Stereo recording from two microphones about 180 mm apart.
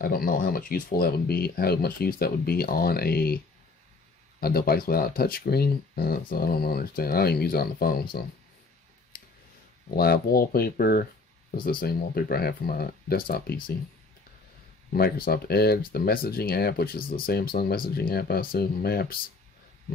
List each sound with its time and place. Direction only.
0.0 s speech: 55° left (ahead or behind)
4.4 s speech: 55° left (ahead or behind)
9.1 s a sound: 55° left (ahead or behind)
9.9 s speech: 55° left (ahead or behind)
14.9 s speech: 55° left (ahead or behind)